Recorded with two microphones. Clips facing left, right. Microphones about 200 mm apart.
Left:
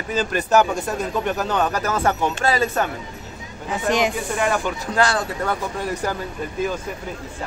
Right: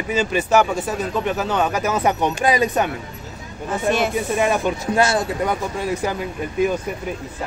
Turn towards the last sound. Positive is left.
turn(degrees=-10)  # may be behind; listen again after turning